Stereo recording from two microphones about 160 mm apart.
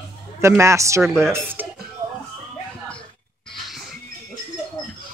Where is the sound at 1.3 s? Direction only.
15° right (ahead or behind).